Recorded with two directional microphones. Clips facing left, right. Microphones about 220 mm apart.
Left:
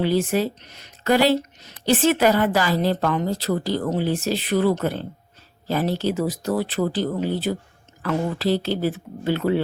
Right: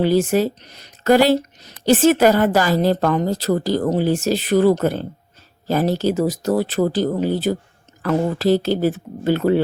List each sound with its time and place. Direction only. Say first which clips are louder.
0.0 s speech: right 4 dB; 45° right (ahead or behind)